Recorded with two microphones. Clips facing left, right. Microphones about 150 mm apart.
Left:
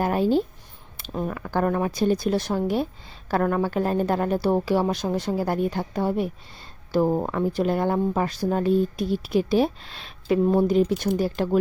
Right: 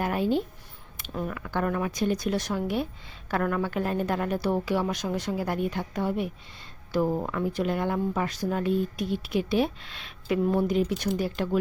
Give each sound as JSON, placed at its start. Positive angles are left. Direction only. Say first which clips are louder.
{"t": 0.0, "sound": "speech", "louder": "left 5 dB", "side_deg": 35}